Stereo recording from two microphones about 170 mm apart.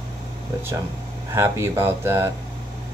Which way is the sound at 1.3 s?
15° right (ahead or behind).